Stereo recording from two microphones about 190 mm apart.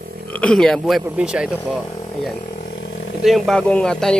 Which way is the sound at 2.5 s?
50° left (ahead or behind).